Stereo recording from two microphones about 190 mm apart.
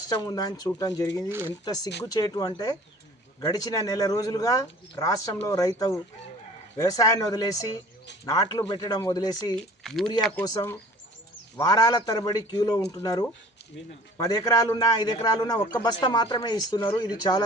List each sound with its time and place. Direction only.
0.1 s a man's voice: 20° left (ahead or behind)
1.3 s speech: 10° right (ahead or behind)
1.6 s a man's voice: 20° left (ahead or behind)
9.6 s speech: centre (ahead or behind)
10.4 s a man's voice: 20° left (ahead or behind)